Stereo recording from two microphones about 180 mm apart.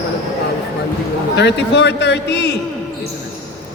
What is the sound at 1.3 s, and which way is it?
A man's voice, 70° left (ahead or behind).